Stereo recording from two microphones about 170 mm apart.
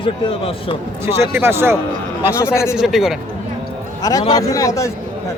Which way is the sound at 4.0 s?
20° left (ahead or behind).